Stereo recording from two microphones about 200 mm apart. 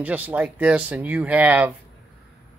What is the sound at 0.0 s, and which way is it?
Speech, 10° right (ahead or behind).